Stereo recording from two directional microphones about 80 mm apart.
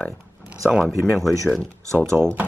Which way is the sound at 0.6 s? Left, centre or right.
Centre.